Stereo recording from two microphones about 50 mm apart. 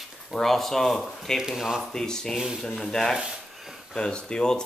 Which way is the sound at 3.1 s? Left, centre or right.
Centre.